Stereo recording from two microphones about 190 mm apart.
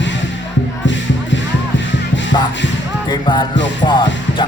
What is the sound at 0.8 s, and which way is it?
Music, 75° left (ahead or behind).